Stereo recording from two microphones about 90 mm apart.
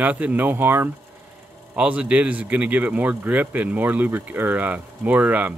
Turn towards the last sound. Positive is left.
turn(degrees=-20)  # may be behind; listen again after turning